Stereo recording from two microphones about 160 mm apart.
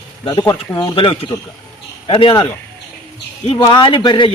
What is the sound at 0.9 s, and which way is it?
A man's voice, 30° left (ahead or behind).